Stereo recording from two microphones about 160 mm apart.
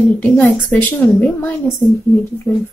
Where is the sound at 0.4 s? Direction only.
10° left (ahead or behind).